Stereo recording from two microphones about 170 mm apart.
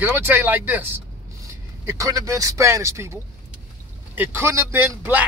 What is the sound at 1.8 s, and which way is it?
Speech, 20° right (ahead or behind).